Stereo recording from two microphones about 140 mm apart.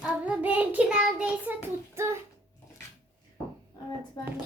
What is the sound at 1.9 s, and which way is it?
Speech, 20° right (ahead or behind).